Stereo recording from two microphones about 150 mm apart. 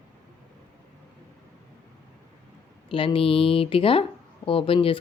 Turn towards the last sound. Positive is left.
turn(degrees=35)  # may be behind; listen again after turning